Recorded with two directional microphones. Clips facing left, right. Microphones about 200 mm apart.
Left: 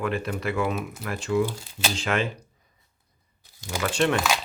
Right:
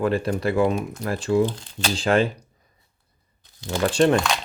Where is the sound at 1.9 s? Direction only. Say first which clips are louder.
Right 7 dB; 35° right (ahead or behind).